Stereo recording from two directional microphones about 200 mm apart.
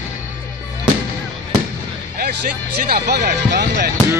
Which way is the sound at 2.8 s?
50° right (ahead or behind).